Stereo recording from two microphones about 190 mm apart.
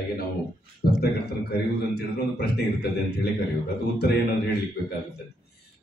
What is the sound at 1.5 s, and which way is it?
Speech, 55° left (ahead or behind).